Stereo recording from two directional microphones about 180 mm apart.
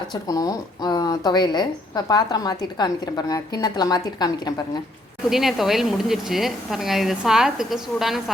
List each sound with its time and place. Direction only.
0.1 s speech: 20° left (ahead or behind)
5.3 s speech: centre (ahead or behind)